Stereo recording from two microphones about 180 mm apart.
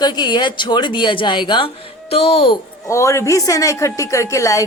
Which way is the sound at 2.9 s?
15° left (ahead or behind).